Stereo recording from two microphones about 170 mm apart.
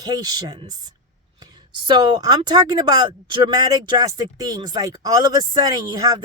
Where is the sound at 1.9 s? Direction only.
25° right (ahead or behind).